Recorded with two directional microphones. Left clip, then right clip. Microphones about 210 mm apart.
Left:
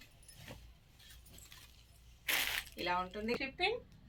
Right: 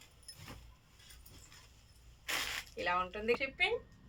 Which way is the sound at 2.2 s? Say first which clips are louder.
Left 2 dB; 50° left (ahead or behind).